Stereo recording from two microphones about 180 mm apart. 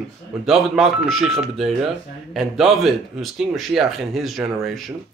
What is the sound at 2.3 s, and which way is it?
A man's voice, centre (ahead or behind).